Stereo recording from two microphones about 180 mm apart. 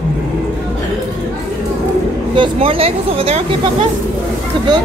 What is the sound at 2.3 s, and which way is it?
Speech, 30° right (ahead or behind).